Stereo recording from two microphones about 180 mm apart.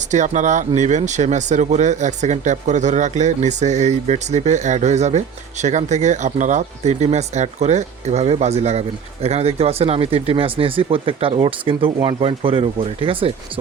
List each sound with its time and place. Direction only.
0.1 s speech: 45° right (ahead or behind)